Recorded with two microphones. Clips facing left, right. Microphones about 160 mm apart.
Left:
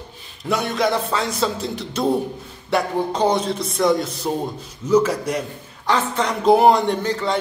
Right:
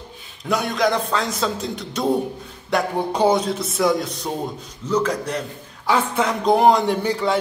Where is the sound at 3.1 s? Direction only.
10° right (ahead or behind); by 5.4 s 10° left (ahead or behind).